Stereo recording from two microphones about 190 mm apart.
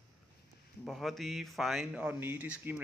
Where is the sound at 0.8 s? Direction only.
Centre (ahead or behind).